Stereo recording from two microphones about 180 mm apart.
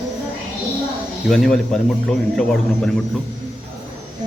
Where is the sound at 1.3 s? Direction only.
Centre (ahead or behind).